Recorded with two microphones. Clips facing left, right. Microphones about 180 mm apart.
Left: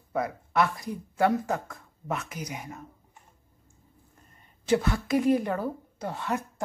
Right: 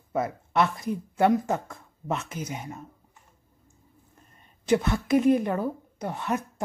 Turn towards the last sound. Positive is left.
turn(degrees=-20)  # may be behind; listen again after turning